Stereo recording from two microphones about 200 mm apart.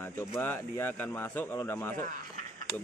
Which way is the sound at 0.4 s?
10° left (ahead or behind).